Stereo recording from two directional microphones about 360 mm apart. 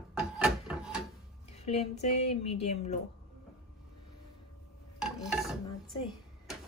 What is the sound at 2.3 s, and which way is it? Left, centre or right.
Speech, centre.